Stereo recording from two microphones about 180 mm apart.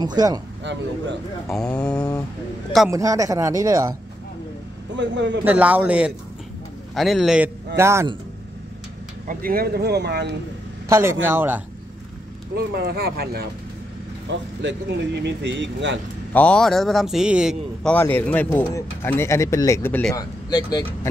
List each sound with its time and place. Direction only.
0.0 s speech: 20° right (ahead or behind)
1.5 s speech: 5° left (ahead or behind)
2.9 s speech: 20° right (ahead or behind)
4.9 s speech: 80° right
5.4 s speech: 10° right (ahead or behind)
9.3 s speech: 55° right (ahead or behind)
10.9 s speech: 15° right (ahead or behind)
12.5 s speech: 60° right (ahead or behind)
14.3 s speech: 85° right
16.3 s speech: 5° left (ahead or behind)
17.8 s speech: 10° left (ahead or behind)
20.2 s speech: 20° left (ahead or behind)